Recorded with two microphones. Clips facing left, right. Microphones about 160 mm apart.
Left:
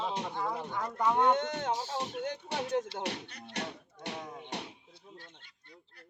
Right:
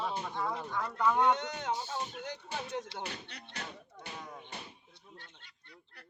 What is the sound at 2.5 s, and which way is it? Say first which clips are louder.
Music: left 6 dB; 70° left (ahead or behind).